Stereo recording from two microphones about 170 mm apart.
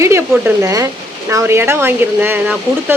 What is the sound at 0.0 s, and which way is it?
Speech, 15° right (ahead or behind).